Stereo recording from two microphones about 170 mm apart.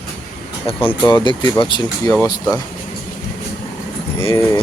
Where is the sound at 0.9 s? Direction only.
25° left (ahead or behind).